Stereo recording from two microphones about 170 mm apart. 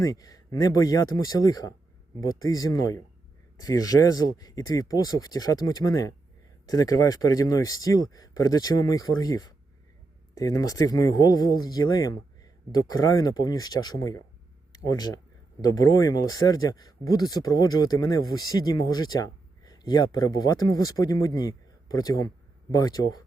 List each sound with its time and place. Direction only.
0.0 s speech: 20° left (ahead or behind)